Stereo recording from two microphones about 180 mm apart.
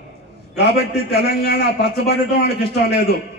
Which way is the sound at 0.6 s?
65° left (ahead or behind).